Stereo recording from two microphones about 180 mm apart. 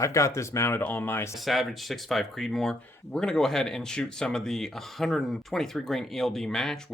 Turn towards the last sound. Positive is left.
turn(degrees=0)  # may be behind; listen again after turning